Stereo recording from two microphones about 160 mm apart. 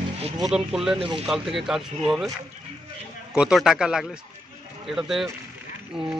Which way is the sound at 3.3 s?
5° right (ahead or behind).